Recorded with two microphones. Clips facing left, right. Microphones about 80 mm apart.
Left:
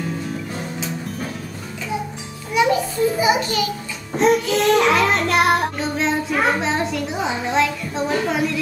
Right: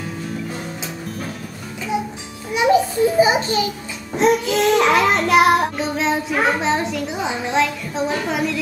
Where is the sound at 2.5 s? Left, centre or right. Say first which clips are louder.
Left 1 dB; right.